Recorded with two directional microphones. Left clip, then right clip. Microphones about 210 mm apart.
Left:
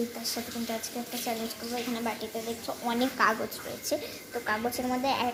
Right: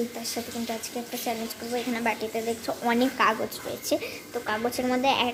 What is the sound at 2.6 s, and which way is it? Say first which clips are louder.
A woman's voice: right 4 dB; 30° right (ahead or behind).